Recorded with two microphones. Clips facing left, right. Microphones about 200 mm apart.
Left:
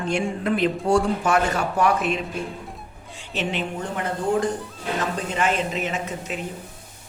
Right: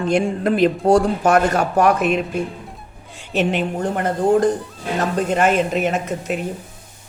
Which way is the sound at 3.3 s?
50° right (ahead or behind).